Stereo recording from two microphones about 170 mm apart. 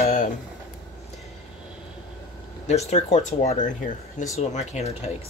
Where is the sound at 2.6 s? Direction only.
40° left (ahead or behind).